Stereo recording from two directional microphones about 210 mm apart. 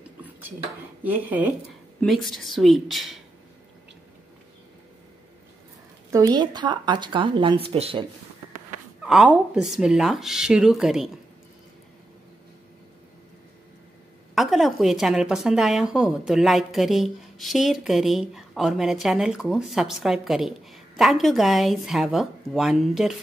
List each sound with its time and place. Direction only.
1.0 s a woman's voice: 10° right (ahead or behind)
6.1 s speech: 20° right (ahead or behind)
9.0 s a woman's voice: 5° right (ahead or behind)
14.3 s a woman's voice: centre (ahead or behind)